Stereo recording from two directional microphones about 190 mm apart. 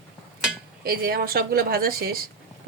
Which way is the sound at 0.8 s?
50° right (ahead or behind).